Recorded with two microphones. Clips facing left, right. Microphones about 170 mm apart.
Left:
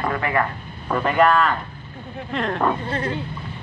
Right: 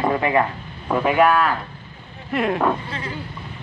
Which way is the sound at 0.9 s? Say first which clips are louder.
Right 1 dB; 10° right (ahead or behind).